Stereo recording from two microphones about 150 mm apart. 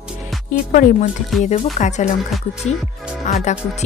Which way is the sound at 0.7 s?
65° left (ahead or behind).